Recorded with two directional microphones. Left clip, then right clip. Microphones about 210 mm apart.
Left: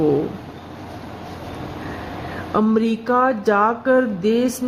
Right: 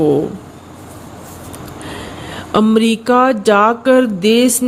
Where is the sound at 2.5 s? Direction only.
40° right (ahead or behind).